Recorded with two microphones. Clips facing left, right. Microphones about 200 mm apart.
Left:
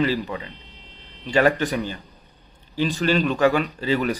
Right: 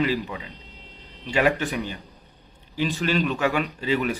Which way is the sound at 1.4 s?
40° left (ahead or behind).